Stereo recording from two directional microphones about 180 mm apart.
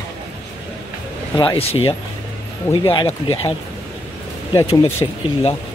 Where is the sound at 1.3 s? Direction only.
30° left (ahead or behind).